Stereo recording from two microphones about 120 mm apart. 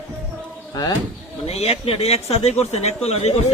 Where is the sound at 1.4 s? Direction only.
60° left (ahead or behind).